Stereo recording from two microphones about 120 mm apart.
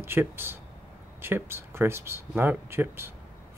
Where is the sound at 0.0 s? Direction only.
20° right (ahead or behind).